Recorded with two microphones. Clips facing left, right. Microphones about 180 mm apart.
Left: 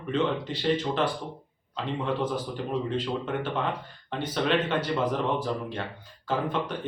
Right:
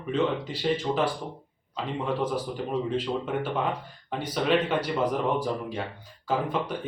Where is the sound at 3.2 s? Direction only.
10° right (ahead or behind).